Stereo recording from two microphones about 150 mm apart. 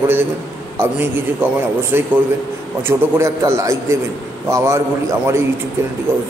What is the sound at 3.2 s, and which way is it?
A man's voice, 20° right (ahead or behind).